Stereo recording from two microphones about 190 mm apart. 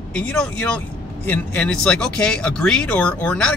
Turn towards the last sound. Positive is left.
turn(degrees=5)  # may be behind; listen again after turning